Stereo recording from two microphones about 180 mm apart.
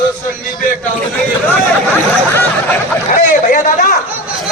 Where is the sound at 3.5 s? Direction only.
50° left (ahead or behind).